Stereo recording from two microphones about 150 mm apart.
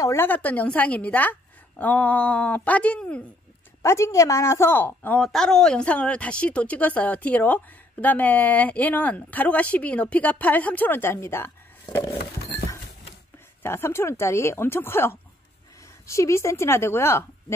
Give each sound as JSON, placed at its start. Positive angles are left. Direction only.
{"t": 0.0, "sound": "a woman's voice", "side_deg": 15}
{"t": 3.8, "sound": "a woman's voice", "side_deg": 20}
{"t": 13.6, "sound": "a woman's voice", "side_deg": 15}